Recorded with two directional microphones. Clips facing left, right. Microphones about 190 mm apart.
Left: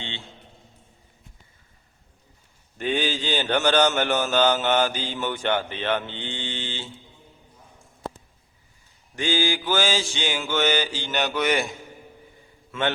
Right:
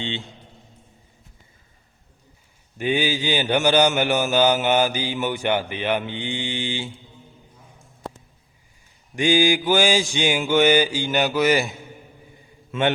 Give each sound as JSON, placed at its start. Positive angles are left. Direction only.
{"t": 2.7, "sound": "mantra", "side_deg": -10}
{"t": 9.1, "sound": "mantra", "side_deg": -15}
{"t": 12.7, "sound": "mantra", "side_deg": -20}